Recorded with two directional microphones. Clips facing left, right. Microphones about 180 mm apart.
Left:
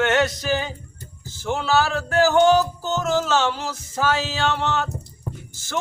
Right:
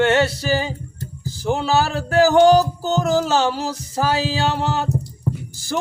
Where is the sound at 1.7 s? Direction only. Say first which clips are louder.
Right 2 dB; 35° right (ahead or behind).